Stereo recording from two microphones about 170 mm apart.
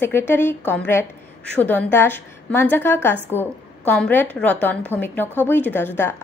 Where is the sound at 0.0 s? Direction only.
15° left (ahead or behind).